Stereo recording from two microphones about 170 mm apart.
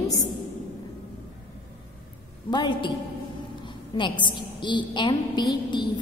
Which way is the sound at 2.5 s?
25° left (ahead or behind).